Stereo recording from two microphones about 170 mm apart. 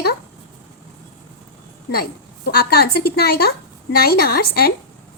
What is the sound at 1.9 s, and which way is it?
A woman's voice, 65° left (ahead or behind).